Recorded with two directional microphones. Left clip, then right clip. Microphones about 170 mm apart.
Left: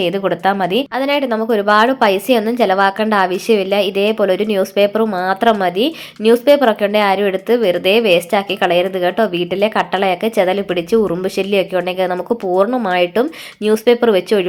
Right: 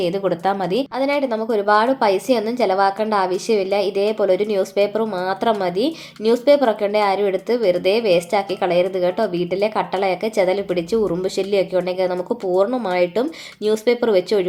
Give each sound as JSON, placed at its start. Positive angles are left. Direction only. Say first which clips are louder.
{"t": 0.0, "sound": "speech", "louder": "left 4 dB", "side_deg": 20}